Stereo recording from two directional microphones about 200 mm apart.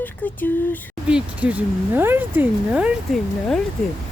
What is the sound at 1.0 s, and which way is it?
Speech, 5° right (ahead or behind).